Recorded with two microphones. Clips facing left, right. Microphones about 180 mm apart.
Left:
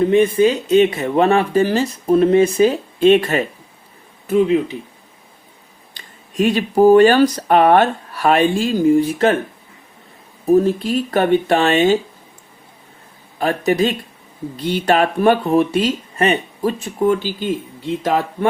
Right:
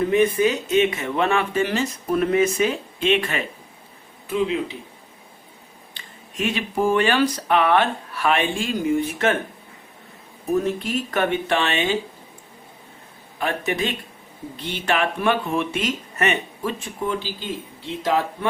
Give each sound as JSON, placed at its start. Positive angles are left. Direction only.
{"t": 0.0, "sound": "speech", "side_deg": 30}
{"t": 5.9, "sound": "speech", "side_deg": 40}
{"t": 10.4, "sound": "speech", "side_deg": 35}
{"t": 13.4, "sound": "speech", "side_deg": 35}